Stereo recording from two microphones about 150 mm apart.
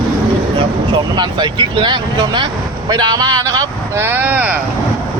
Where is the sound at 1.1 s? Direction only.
30° right (ahead or behind); by 4.6 s 10° right (ahead or behind).